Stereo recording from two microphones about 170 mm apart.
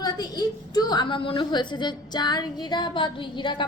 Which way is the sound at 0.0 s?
25° left (ahead or behind).